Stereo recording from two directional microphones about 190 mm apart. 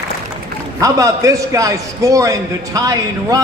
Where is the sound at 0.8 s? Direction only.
15° right (ahead or behind).